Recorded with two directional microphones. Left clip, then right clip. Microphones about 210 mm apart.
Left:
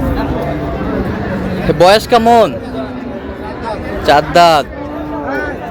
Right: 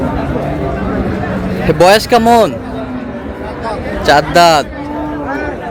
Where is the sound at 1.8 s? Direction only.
5° right (ahead or behind).